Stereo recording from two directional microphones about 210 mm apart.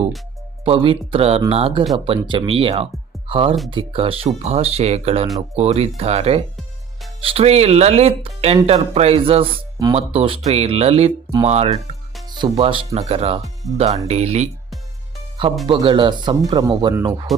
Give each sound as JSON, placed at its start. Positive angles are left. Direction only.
{"t": 0.6, "sound": "speech", "side_deg": -25}
{"t": 12.3, "sound": "speech", "side_deg": -20}
{"t": 15.6, "sound": "speech", "side_deg": -25}